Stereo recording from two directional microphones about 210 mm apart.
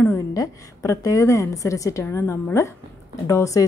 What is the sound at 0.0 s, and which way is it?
A woman's voice, 15° left (ahead or behind).